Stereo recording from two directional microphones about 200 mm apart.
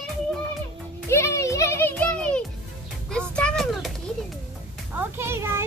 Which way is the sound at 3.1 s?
5° left (ahead or behind).